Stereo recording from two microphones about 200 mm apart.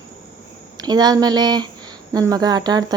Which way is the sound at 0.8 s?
20° right (ahead or behind).